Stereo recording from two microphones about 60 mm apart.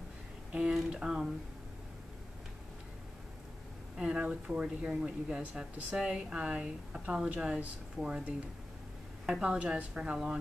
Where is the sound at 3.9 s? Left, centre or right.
Centre.